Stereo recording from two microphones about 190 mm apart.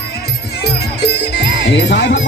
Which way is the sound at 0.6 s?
60° left (ahead or behind).